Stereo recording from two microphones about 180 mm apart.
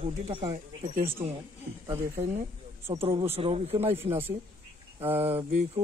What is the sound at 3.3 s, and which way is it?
Speech, 35° right (ahead or behind).